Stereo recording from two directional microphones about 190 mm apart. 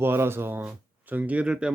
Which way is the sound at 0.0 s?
10° right (ahead or behind).